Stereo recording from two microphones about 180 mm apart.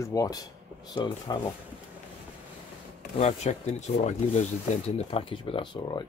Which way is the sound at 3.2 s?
40° left (ahead or behind).